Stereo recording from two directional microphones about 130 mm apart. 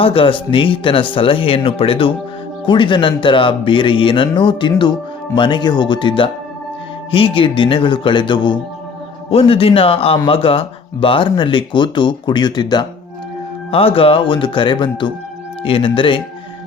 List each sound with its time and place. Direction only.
0.0 s speech: 45° left (ahead or behind)
13.7 s speech: 45° left (ahead or behind)